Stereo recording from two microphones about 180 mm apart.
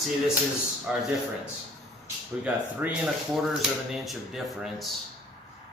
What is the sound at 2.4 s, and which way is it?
Speech, 5° right (ahead or behind).